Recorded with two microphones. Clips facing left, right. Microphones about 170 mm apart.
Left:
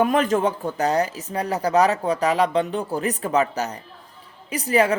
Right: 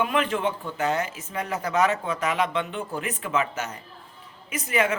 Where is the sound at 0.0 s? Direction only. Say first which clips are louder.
Left 5 dB; 40° left (ahead or behind).